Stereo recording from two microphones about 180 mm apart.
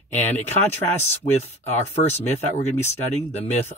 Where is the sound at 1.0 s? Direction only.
35° left (ahead or behind).